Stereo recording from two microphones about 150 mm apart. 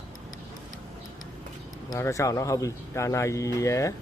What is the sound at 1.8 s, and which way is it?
Speech, 20° left (ahead or behind).